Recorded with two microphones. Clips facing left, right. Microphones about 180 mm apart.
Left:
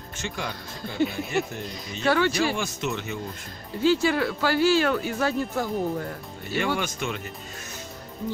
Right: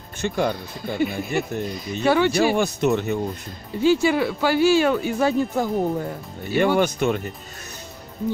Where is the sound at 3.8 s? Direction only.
15° right (ahead or behind).